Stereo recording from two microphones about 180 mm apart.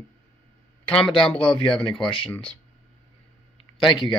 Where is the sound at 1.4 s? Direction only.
30° left (ahead or behind).